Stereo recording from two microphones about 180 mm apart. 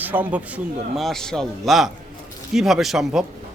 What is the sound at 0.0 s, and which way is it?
Speech, 10° right (ahead or behind).